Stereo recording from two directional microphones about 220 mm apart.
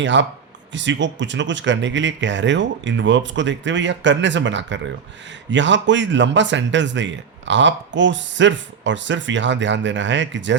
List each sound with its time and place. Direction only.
0.0 s speech: 55° right (ahead or behind)